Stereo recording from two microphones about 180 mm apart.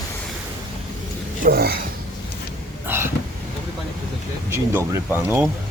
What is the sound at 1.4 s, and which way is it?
Speech, 55° right (ahead or behind).